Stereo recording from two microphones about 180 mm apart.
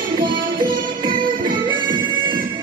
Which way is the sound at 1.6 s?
25° right (ahead or behind).